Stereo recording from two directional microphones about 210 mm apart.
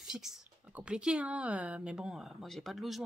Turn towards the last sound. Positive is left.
turn(degrees=0)  # may be behind; listen again after turning